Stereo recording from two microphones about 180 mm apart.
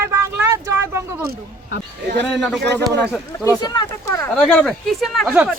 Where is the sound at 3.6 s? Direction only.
20° left (ahead or behind).